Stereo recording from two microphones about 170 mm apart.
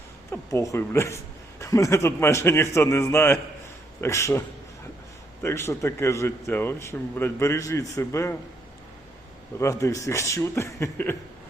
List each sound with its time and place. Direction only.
0.3 s a woman's voice: 15° left (ahead or behind)
9.6 s a woman's voice: 20° left (ahead or behind)